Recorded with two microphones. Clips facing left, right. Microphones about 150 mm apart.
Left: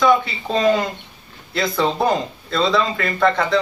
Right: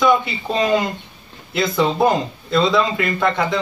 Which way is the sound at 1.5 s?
Centre (ahead or behind).